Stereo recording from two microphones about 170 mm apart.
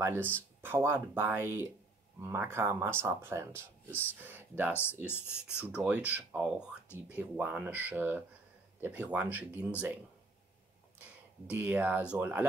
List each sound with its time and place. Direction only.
0.0 s speech: 15° right (ahead or behind)
4.7 s speech: 15° left (ahead or behind)
5.6 s speech: 5° right (ahead or behind)
11.5 s speech: 10° right (ahead or behind)